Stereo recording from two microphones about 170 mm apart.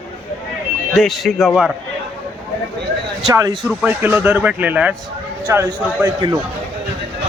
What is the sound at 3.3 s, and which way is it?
Speech, 20° right (ahead or behind).